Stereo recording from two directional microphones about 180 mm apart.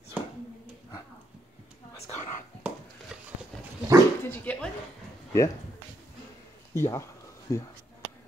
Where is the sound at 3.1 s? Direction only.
5° right (ahead or behind).